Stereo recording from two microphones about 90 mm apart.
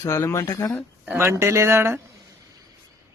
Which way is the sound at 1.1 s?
25° right (ahead or behind).